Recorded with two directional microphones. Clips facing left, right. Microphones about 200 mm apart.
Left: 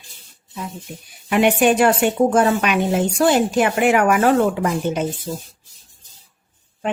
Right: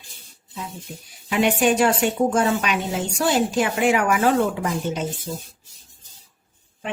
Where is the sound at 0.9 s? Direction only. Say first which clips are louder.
Left 6 dB; 55° left (ahead or behind).